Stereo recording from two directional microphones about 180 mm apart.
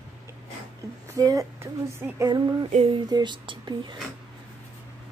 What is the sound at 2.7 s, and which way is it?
Speech, 35° right (ahead or behind).